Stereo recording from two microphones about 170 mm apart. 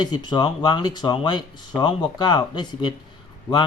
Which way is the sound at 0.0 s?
25° left (ahead or behind).